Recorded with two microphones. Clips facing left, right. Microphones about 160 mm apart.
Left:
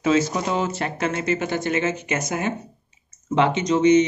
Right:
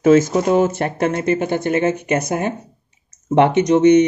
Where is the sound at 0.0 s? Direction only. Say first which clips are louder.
Right 8 dB; 50° right (ahead or behind).